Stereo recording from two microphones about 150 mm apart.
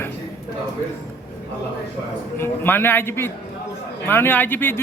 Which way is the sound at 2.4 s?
15° left (ahead or behind).